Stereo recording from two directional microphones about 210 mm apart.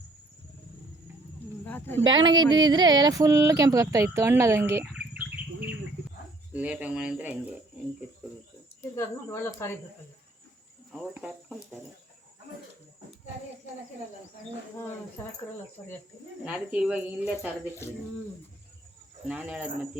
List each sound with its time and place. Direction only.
1.6 s speech: 10° left (ahead or behind)
2.0 s speech: 20° right (ahead or behind)
8.8 s speech: 15° left (ahead or behind)
10.9 s speech: 5° right (ahead or behind)
16.5 s speech: 5° right (ahead or behind)
19.3 s speech: 5° right (ahead or behind)